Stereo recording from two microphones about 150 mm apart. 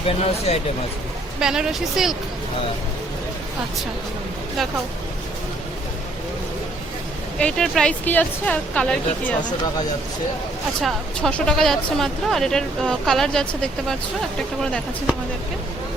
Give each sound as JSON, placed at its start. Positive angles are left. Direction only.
{"t": 0.0, "sound": "speech", "side_deg": 40}
{"t": 1.4, "sound": "speech", "side_deg": -5}
{"t": 7.3, "sound": "speech", "side_deg": 5}
{"t": 10.8, "sound": "speech", "side_deg": 5}